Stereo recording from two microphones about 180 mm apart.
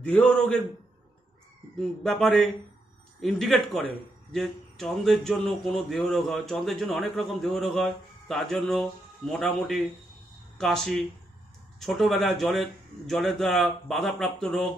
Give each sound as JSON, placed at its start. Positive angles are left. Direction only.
{"t": 0.0, "sound": "a man's voice", "side_deg": 5}
{"t": 1.8, "sound": "speech", "side_deg": 5}